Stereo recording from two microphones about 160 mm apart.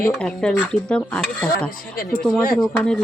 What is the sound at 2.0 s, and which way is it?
Speech, 65° left (ahead or behind).